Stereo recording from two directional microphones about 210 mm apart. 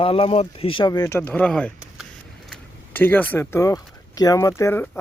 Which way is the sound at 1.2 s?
5° left (ahead or behind).